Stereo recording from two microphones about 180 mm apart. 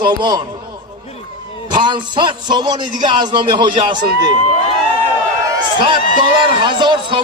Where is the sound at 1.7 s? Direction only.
25° right (ahead or behind).